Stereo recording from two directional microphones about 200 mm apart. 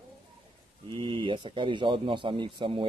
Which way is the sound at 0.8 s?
25° right (ahead or behind).